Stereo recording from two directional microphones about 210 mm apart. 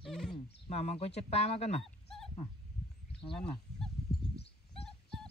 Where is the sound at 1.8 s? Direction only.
Centre (ahead or behind).